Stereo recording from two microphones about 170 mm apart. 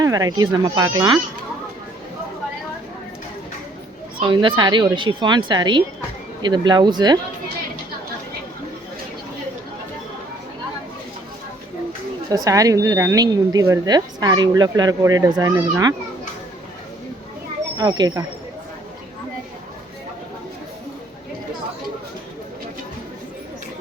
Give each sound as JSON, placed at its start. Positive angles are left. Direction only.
{"t": 0.0, "sound": "speech", "side_deg": -20}
{"t": 4.2, "sound": "speech", "side_deg": -30}
{"t": 12.3, "sound": "speech", "side_deg": -20}
{"t": 17.7, "sound": "speech", "side_deg": -25}